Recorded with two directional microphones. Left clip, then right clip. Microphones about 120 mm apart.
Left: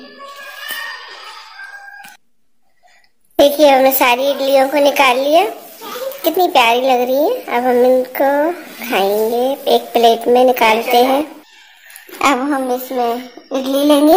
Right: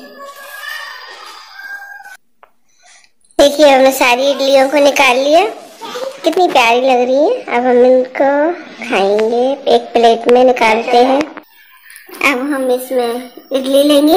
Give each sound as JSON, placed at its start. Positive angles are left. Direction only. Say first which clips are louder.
{"t": 3.3, "sound": "a child's voice", "louder": "right 2 dB", "side_deg": 0}
{"t": 12.2, "sound": "speech", "louder": "even", "side_deg": 45}
{"t": 12.5, "sound": "a woman's voice", "louder": "right 3 dB", "side_deg": 55}